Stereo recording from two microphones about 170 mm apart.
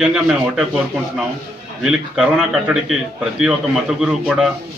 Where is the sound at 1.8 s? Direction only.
5° right (ahead or behind).